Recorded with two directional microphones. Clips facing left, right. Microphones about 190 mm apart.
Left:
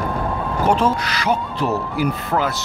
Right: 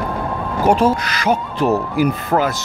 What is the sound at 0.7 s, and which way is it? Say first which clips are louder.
Speech: right 4 dB; 10° right (ahead or behind).